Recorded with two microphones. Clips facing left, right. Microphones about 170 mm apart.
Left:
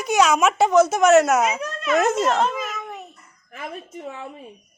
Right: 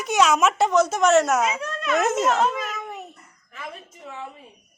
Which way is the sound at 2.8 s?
10° right (ahead or behind).